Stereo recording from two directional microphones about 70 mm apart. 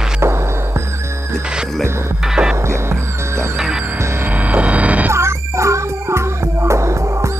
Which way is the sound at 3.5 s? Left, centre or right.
Centre.